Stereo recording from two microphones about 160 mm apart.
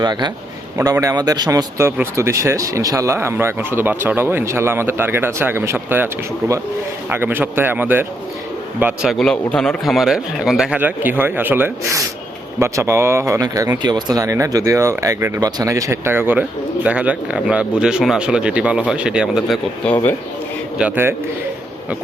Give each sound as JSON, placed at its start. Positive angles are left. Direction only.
{"t": 0.0, "sound": "a man's voice", "side_deg": -25}
{"t": 19.8, "sound": "speech", "side_deg": 10}
{"t": 20.7, "sound": "speech", "side_deg": -10}